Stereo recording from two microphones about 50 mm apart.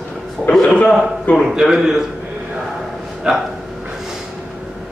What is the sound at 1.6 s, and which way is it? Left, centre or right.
Speech, centre.